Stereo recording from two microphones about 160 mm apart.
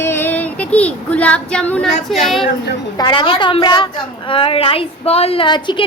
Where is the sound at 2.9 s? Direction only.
30° left (ahead or behind).